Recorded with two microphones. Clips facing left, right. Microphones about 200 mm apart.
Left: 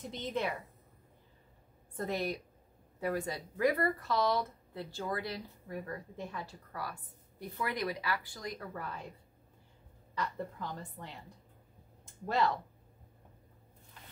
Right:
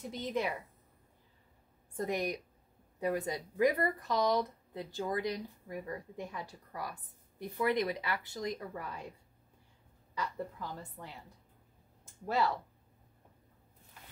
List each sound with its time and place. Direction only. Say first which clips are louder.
0.0 s a woman's voice: right 1 dB; 10° right (ahead or behind)
2.0 s a woman's voice: right 1 dB; 15° right (ahead or behind)
10.1 s a woman's voice: left 1 dB; 10° right (ahead or behind)